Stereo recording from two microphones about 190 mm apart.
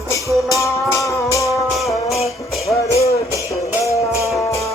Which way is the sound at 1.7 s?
Centre (ahead or behind).